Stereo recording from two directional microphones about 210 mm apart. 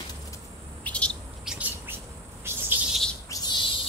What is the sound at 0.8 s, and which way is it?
Bird, 5° left (ahead or behind).